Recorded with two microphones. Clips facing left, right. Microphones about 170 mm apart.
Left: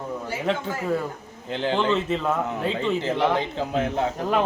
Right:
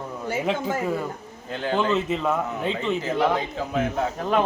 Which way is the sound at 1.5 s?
20° left (ahead or behind).